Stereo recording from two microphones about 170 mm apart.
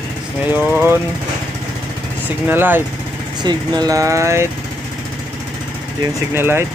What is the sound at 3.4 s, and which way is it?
Speech, 25° right (ahead or behind).